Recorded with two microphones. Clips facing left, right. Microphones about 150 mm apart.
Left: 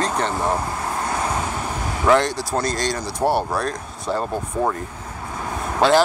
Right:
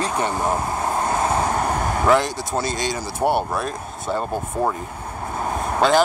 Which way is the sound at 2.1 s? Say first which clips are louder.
Left 3 dB; centre (ahead or behind).